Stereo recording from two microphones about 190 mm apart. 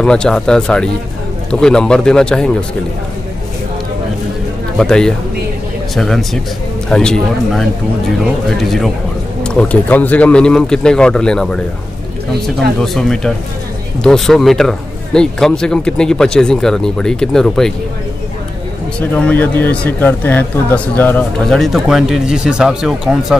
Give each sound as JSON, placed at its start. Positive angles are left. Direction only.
{"t": 0.0, "sound": "speech", "side_deg": 5}
{"t": 4.7, "sound": "speech", "side_deg": 5}
{"t": 12.8, "sound": "speech", "side_deg": 0}
{"t": 18.9, "sound": "speech", "side_deg": 5}